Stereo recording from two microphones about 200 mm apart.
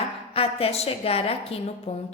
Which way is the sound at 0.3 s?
30° left (ahead or behind).